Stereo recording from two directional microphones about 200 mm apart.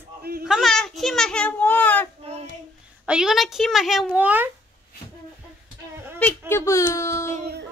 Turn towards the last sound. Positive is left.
turn(degrees=-40)  # may be behind; listen again after turning